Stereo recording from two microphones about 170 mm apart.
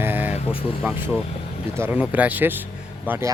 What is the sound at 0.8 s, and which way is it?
Speech, 5° right (ahead or behind).